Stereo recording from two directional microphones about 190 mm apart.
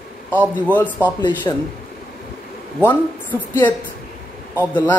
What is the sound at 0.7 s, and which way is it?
Speech, 10° left (ahead or behind).